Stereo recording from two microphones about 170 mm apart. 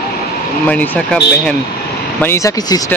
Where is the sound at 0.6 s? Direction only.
10° left (ahead or behind).